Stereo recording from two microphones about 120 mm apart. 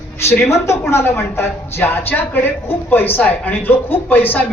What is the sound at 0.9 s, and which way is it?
A woman's voice, 20° left (ahead or behind).